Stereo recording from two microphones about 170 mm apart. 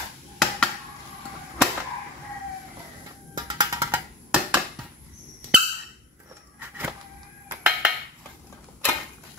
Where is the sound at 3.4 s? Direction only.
25° right (ahead or behind).